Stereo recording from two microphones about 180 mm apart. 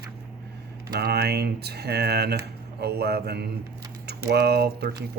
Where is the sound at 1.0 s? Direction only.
65° right (ahead or behind).